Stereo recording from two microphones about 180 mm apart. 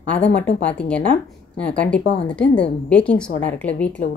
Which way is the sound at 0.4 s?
5° left (ahead or behind).